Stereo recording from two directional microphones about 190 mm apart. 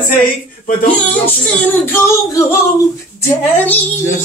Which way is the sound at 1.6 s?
10° left (ahead or behind).